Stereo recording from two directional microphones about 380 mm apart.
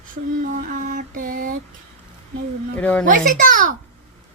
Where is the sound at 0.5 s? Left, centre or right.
Right.